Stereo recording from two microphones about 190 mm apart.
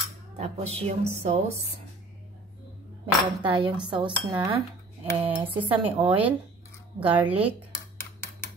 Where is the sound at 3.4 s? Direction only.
25° right (ahead or behind).